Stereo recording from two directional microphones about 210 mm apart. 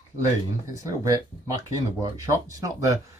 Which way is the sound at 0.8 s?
15° right (ahead or behind).